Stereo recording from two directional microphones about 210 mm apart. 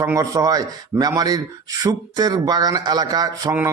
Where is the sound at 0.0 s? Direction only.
10° right (ahead or behind).